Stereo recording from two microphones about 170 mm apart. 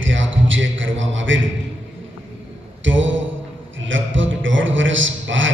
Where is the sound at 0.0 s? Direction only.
90° right.